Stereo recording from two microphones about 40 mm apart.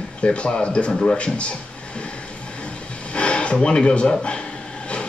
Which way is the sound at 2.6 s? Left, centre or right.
Left.